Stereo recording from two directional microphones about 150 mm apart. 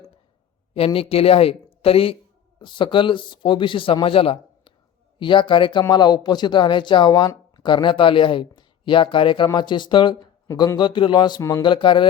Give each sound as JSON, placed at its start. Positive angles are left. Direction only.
{"t": 0.9, "sound": "speech", "side_deg": 40}
{"t": 10.5, "sound": "speech", "side_deg": 20}
{"t": 10.8, "sound": "speech", "side_deg": 30}